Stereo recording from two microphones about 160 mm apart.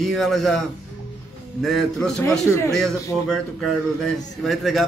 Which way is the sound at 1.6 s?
5° left (ahead or behind).